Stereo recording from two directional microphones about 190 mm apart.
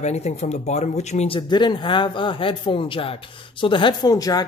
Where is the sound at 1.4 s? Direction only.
25° left (ahead or behind).